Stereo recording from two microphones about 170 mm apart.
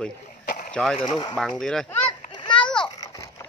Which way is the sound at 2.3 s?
30° left (ahead or behind).